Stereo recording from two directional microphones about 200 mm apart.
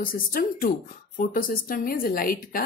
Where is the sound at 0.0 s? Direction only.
45° left (ahead or behind).